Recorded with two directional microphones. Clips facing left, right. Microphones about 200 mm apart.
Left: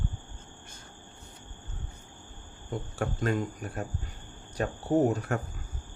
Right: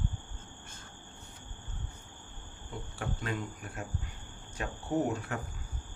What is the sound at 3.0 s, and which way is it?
Speech, 45° left (ahead or behind).